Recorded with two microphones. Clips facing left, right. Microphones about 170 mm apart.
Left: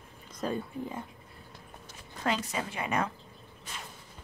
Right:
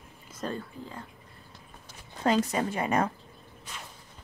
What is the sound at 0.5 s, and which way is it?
Speech, 15° left (ahead or behind).